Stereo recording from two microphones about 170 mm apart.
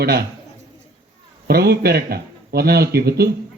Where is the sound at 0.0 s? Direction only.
70° right (ahead or behind).